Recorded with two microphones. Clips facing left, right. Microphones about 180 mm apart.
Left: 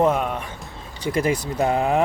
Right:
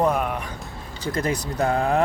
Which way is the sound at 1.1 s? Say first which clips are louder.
Left 3 dB; 10° left (ahead or behind).